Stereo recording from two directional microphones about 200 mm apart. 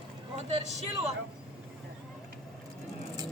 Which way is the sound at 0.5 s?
30° right (ahead or behind).